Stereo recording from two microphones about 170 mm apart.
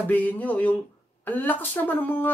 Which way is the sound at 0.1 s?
10° left (ahead or behind).